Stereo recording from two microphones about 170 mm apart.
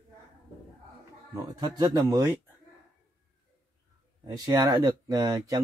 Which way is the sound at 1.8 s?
20° right (ahead or behind).